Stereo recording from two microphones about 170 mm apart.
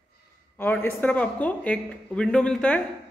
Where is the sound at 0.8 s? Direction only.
10° left (ahead or behind).